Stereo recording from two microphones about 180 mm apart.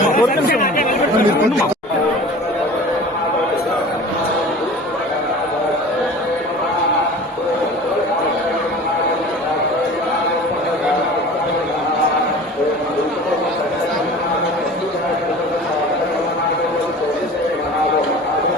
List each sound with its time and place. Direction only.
0.1 s chatter: 50° left (ahead or behind)